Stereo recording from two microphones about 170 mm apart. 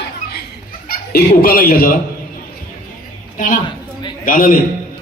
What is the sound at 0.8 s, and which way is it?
Speech, 60° left (ahead or behind).